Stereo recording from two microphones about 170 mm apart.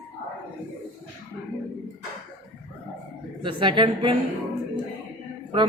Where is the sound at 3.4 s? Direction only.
30° right (ahead or behind).